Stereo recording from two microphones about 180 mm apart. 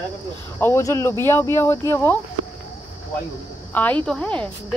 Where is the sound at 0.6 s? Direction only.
15° left (ahead or behind).